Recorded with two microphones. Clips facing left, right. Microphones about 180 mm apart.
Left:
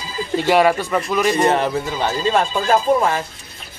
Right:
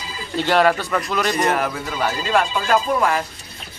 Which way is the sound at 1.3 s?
30° left (ahead or behind).